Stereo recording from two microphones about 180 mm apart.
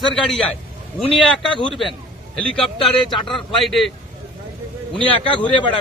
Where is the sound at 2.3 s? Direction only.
5° left (ahead or behind).